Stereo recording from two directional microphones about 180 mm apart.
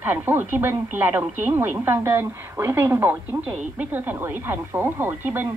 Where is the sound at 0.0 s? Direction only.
10° right (ahead or behind).